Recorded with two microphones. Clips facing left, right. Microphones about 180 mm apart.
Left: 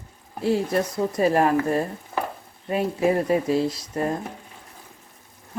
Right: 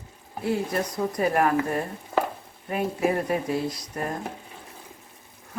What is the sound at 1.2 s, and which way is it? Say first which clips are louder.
Speech: left 3 dB; 25° left (ahead or behind).